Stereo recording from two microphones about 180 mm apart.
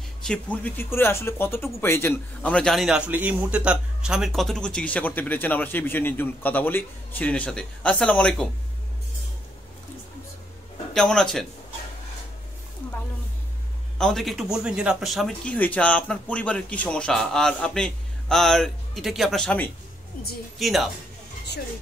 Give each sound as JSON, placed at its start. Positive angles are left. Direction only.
{"t": 0.2, "sound": "speech", "side_deg": 5}
{"t": 10.9, "sound": "speech", "side_deg": 5}
{"t": 13.9, "sound": "speech", "side_deg": 0}